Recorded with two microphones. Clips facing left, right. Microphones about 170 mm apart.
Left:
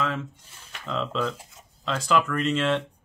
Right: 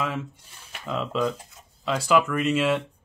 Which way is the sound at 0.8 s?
10° right (ahead or behind).